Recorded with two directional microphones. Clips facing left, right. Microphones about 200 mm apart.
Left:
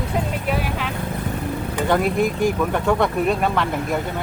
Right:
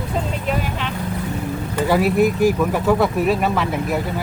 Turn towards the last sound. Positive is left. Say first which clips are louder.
# right 1 dB
turn(degrees=-5)  # may be behind; listen again after turning